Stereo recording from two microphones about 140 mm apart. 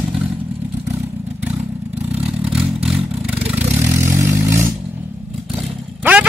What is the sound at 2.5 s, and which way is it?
Vehicle, 5° right (ahead or behind).